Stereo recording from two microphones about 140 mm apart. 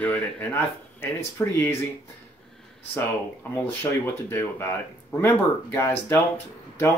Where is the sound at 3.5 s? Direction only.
15° left (ahead or behind).